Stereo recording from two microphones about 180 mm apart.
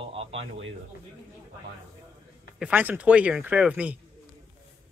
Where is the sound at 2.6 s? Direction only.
10° right (ahead or behind).